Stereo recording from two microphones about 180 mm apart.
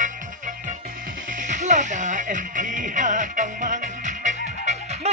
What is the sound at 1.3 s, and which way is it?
Music, 45° right (ahead or behind).